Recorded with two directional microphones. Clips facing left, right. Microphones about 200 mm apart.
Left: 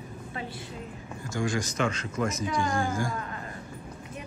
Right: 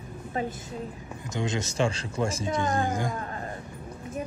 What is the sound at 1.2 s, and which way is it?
Speech, 20° right (ahead or behind).